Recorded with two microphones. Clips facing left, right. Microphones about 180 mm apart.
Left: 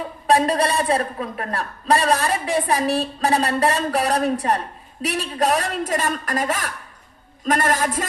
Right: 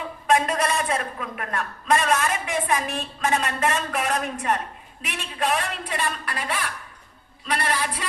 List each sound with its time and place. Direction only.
0.3 s a man's voice: 35° left (ahead or behind)